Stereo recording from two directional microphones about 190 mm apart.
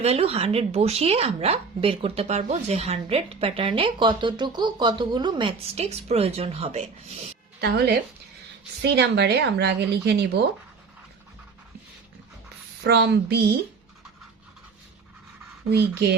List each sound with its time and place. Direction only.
0.0 s a woman's voice: 30° right (ahead or behind)
7.6 s speech: 55° right (ahead or behind)
12.8 s speech: 60° right (ahead or behind)
15.7 s speech: 60° right (ahead or behind)